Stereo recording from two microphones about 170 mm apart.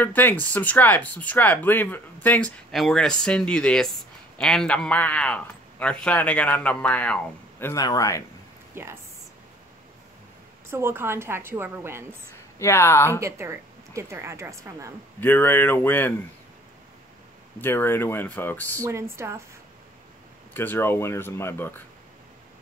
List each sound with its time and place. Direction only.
0.0 s speech: 10° left (ahead or behind)
7.7 s speech: 20° left (ahead or behind)
8.8 s speech: 15° right (ahead or behind)
10.7 s speech: 15° right (ahead or behind)
12.5 s speech: 15° left (ahead or behind)
13.2 s speech: 15° right (ahead or behind)
15.1 s speech: 10° left (ahead or behind)
17.6 s speech: 10° left (ahead or behind)
18.9 s speech: 15° right (ahead or behind)
20.5 s speech: 10° left (ahead or behind)